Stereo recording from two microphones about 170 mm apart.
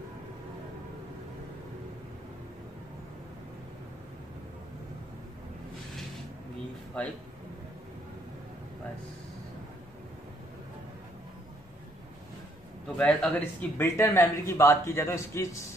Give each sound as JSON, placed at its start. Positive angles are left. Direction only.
{"t": 7.0, "sound": "speech", "side_deg": 5}
{"t": 12.9, "sound": "speech", "side_deg": 5}